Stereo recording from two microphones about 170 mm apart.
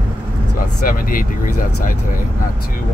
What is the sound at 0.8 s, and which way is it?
Speech, 55° left (ahead or behind).